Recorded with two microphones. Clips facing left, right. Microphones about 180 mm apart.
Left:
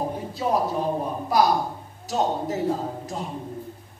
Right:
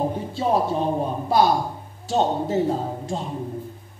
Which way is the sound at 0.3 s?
25° right (ahead or behind).